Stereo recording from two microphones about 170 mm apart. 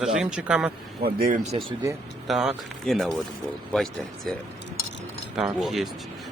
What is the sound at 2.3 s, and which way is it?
Speech, centre (ahead or behind).